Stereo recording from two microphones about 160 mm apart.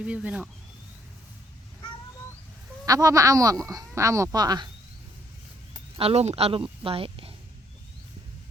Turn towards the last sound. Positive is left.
turn(degrees=-35)  # may be behind; listen again after turning